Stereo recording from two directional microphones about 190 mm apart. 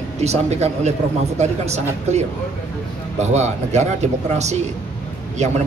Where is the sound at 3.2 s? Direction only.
35° right (ahead or behind).